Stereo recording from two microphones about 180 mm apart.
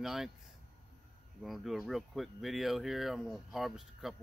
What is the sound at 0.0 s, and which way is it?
Speech, centre (ahead or behind).